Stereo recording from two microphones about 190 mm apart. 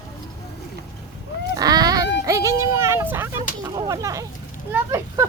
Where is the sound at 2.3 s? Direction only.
15° right (ahead or behind).